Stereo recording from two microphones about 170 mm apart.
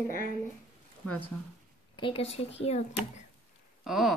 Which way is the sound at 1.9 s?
30° left (ahead or behind).